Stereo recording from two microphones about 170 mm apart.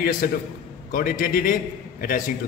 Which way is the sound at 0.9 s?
55° left (ahead or behind).